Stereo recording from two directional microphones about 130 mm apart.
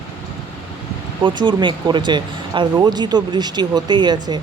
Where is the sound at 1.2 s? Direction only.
40° right (ahead or behind).